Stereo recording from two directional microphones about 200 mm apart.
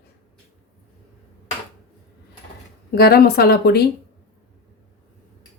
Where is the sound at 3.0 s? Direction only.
50° left (ahead or behind).